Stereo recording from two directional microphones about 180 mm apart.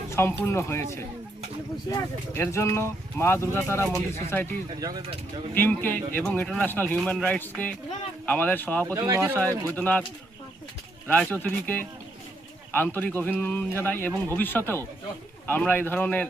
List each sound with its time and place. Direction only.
0.1 s speech: 15° left (ahead or behind)
1.9 s speech: 15° left (ahead or behind)
4.8 s speech: 20° right (ahead or behind)
5.5 s speech: 10° left (ahead or behind)
8.9 s speech: 20° right (ahead or behind)
9.7 s speech: 10° left (ahead or behind)
11.1 s speech: 10° left (ahead or behind)